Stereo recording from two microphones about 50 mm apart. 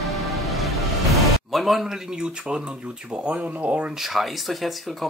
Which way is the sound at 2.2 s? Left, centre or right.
Centre.